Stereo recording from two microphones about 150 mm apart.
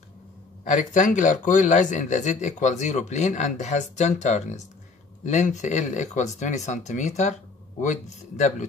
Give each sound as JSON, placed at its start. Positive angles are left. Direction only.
{"t": 0.7, "sound": "speech", "side_deg": 60}